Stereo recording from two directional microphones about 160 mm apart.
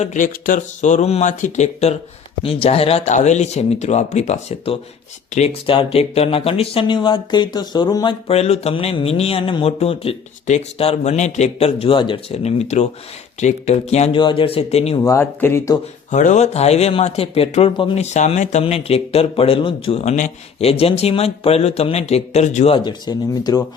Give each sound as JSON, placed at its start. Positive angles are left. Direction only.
{"t": 0.0, "sound": "speech", "side_deg": 50}
{"t": 8.3, "sound": "speech", "side_deg": 40}
{"t": 14.2, "sound": "speech", "side_deg": 30}
{"t": 14.9, "sound": "speech", "side_deg": 20}
{"t": 16.1, "sound": "speech", "side_deg": 50}